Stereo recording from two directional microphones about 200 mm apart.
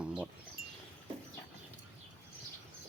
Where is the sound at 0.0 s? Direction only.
5° right (ahead or behind).